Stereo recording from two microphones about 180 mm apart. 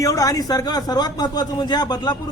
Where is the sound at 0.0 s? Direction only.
20° left (ahead or behind).